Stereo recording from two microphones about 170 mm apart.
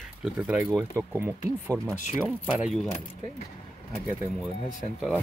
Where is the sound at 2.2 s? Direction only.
Centre (ahead or behind).